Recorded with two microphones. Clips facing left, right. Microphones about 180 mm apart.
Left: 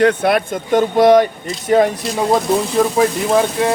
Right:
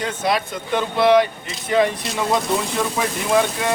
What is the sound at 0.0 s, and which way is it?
Speech, 60° left (ahead or behind).